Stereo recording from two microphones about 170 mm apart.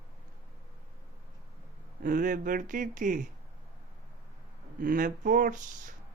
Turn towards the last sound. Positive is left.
turn(degrees=-50)  # may be behind; listen again after turning